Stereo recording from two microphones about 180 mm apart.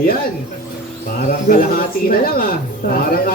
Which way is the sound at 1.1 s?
50° left (ahead or behind).